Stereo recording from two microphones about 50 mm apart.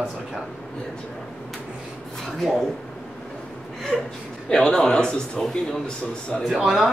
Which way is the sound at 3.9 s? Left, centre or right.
Centre.